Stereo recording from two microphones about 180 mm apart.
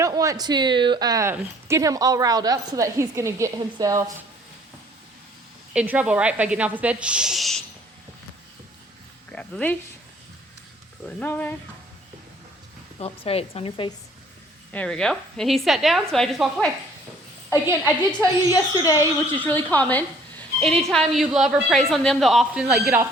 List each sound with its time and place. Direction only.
0.0 s a woman's voice: 20° right (ahead or behind)
5.7 s speech: 10° right (ahead or behind)
9.3 s speech: 5° left (ahead or behind)
11.2 s speech: 10° left (ahead or behind)
13.0 s speech: 35° left (ahead or behind)
14.7 s a woman's voice: 5° left (ahead or behind)
18.5 s a woman's voice: 20° left (ahead or behind); by 22.9 s centre (ahead or behind)